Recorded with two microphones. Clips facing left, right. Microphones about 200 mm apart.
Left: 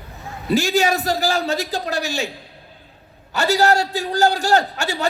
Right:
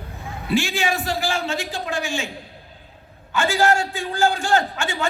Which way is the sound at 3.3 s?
40° left (ahead or behind).